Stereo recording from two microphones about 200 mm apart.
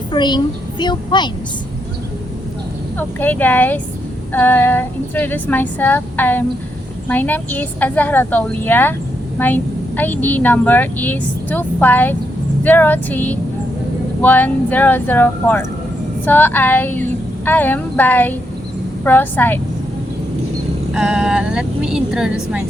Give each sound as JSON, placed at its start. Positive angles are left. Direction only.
{"t": 0.1, "sound": "a woman's voice", "side_deg": 20}
{"t": 3.0, "sound": "a woman's voice", "side_deg": 10}
{"t": 20.9, "sound": "speech", "side_deg": -5}